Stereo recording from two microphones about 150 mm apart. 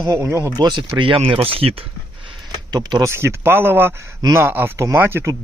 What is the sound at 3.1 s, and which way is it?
Speech, 15° right (ahead or behind).